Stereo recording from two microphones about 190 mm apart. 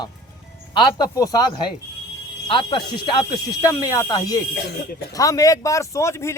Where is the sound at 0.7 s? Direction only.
25° left (ahead or behind).